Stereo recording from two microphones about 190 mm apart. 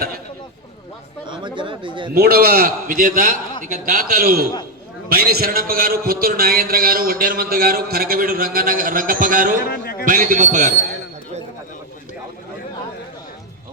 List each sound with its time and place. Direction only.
1.3 s speech: 25° right (ahead or behind)
2.1 s a man's voice: 55° right (ahead or behind)
9.6 s a sound: 50° left (ahead or behind)
10.1 s a man's voice: 45° right (ahead or behind)